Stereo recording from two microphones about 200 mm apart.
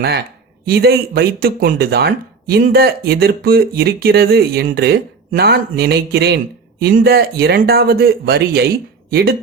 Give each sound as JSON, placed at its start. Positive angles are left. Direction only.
{"t": 0.6, "sound": "speech", "side_deg": -50}